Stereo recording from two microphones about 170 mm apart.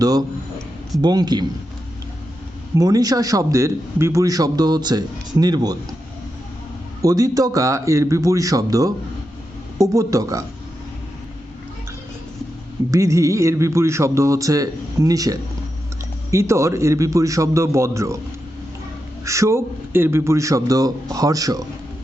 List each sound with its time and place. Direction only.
0.0 s a sound: 20° right (ahead or behind)
1.0 s a man's voice: 25° right (ahead or behind)
2.7 s a man's voice: 20° right (ahead or behind)
7.0 s a man's voice: 20° right (ahead or behind)
12.9 s a man's voice: 20° right (ahead or behind)
19.2 s a man's voice: 20° right (ahead or behind)